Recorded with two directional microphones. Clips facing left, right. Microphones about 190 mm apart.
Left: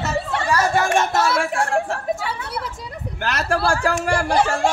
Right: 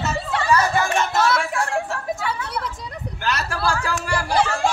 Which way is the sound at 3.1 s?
50° left (ahead or behind).